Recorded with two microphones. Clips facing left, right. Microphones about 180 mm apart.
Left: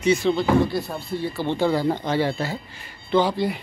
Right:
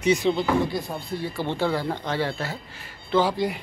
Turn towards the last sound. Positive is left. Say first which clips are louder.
# left 2 dB
turn(degrees=-10)  # may be behind; listen again after turning